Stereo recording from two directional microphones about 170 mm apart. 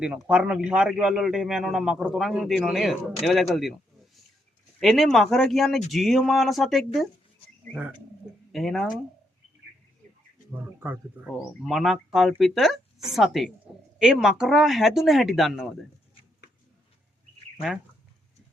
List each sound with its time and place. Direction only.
0.3 s a man's voice: 5° right (ahead or behind)
4.8 s a man's voice: centre (ahead or behind)
10.5 s speech: 10° right (ahead or behind)
11.6 s a man's voice: centre (ahead or behind)